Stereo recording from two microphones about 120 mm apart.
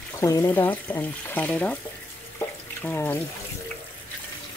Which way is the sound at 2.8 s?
15° left (ahead or behind).